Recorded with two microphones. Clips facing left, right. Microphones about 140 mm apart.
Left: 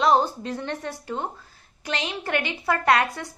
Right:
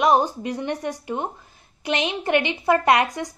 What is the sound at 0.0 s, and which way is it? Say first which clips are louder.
A woman's voice: right 2 dB; 15° right (ahead or behind).